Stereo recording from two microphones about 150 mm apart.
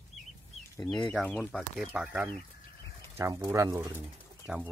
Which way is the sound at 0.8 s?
5° left (ahead or behind).